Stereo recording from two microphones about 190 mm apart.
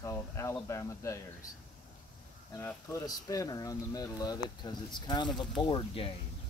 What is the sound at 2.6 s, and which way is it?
Speech, 15° left (ahead or behind).